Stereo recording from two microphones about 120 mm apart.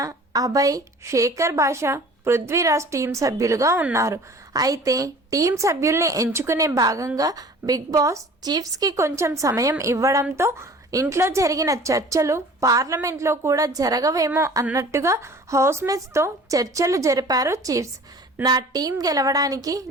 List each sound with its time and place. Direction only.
0.0 s a woman's voice: 30° right (ahead or behind)